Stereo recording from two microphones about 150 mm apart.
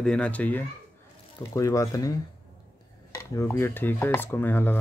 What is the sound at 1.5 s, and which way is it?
Speech, 20° left (ahead or behind).